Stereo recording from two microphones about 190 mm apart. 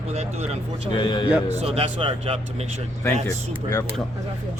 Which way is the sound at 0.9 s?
25° left (ahead or behind).